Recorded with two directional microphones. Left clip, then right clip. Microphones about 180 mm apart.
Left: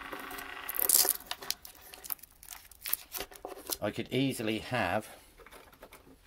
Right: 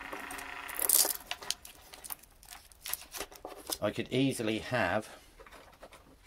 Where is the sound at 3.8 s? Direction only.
Centre (ahead or behind).